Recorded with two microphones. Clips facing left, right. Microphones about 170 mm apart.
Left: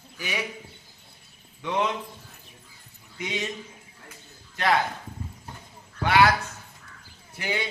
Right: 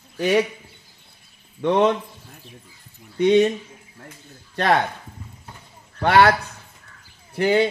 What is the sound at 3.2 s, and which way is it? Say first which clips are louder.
Speech: right 17 dB; 65° right (ahead or behind).